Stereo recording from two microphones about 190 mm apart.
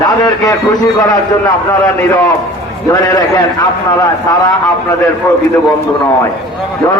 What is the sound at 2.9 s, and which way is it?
Speech, 20° left (ahead or behind).